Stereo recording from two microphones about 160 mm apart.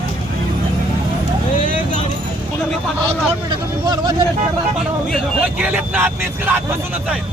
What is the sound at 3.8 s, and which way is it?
Vehicle, 25° right (ahead or behind).